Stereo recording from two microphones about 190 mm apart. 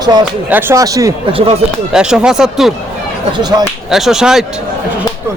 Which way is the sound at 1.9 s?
5° right (ahead or behind).